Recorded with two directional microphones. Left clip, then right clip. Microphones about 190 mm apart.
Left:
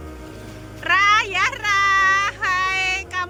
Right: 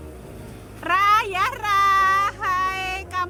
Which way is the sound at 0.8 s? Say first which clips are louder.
Left 2 dB; 30° right (ahead or behind).